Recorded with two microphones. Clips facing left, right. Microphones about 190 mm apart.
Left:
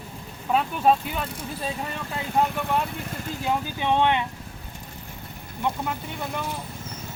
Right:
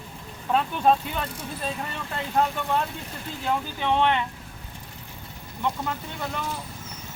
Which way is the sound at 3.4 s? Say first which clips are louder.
Left 1 dB; 15° left (ahead or behind).